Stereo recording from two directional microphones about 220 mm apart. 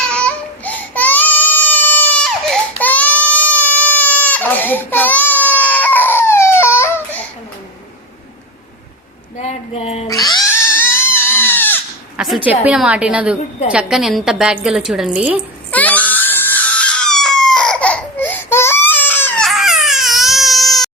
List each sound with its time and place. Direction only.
0.1 s baby cry: 5° left (ahead or behind)
9.4 s a sound: 30° left (ahead or behind)
10.1 s cat: 15° left (ahead or behind)
12.1 s a sound: centre (ahead or behind)
12.5 s a woman's voice: 5° right (ahead or behind)
15.7 s screaming: 5° left (ahead or behind)